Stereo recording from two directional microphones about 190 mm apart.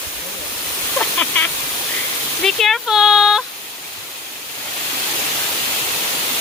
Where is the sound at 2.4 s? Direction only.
Centre (ahead or behind).